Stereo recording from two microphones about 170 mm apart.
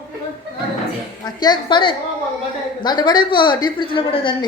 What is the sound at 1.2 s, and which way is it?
A woman's voice, 25° left (ahead or behind).